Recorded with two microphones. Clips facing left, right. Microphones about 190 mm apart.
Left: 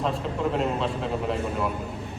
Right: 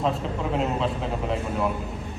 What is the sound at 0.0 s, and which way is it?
A man's voice, centre (ahead or behind).